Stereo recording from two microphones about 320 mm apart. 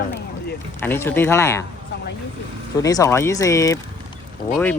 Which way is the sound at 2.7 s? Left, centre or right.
Centre.